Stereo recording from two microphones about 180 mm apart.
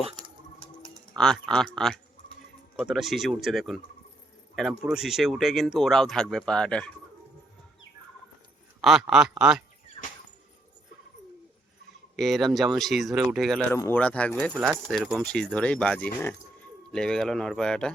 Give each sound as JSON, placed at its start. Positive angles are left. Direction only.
{"t": 0.0, "sound": "a sound", "side_deg": -30}
{"t": 1.1, "sound": "speech", "side_deg": 5}
{"t": 4.8, "sound": "speech", "side_deg": -5}
{"t": 8.8, "sound": "speech", "side_deg": -5}
{"t": 12.1, "sound": "speech", "side_deg": 0}
{"t": 13.7, "sound": "speech", "side_deg": 10}
{"t": 14.5, "sound": "speech", "side_deg": -10}